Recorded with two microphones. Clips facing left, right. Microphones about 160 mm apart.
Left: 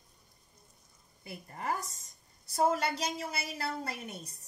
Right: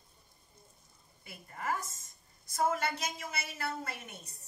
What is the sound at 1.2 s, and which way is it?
A woman's voice, 30° left (ahead or behind).